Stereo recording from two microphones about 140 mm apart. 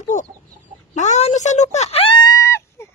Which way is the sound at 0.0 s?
60° left (ahead or behind).